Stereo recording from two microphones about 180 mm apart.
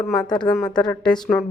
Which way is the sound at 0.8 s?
5° left (ahead or behind).